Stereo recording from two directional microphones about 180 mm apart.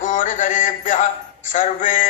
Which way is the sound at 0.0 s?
45° left (ahead or behind).